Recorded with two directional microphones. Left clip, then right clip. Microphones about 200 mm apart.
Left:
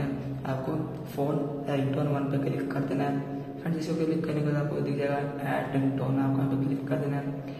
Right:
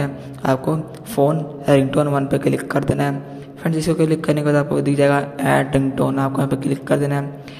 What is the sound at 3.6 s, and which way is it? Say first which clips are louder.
A man's voice: right 12 dB; 50° right (ahead or behind).